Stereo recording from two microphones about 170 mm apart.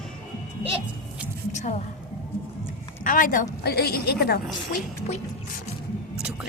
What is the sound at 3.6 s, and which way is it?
Speech, 70° left (ahead or behind).